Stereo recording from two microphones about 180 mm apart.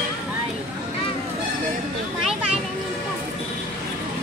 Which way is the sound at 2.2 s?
5° right (ahead or behind).